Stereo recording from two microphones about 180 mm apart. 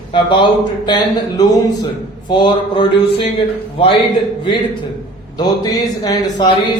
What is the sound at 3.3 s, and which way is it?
Speech, 30° left (ahead or behind).